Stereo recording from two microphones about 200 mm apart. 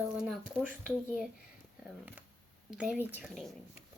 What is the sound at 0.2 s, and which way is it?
Speech, 5° right (ahead or behind).